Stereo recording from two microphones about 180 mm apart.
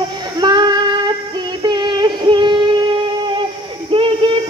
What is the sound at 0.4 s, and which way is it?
Child singing, 25° right (ahead or behind).